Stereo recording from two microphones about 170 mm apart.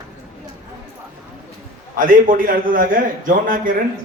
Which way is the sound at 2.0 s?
55° right (ahead or behind).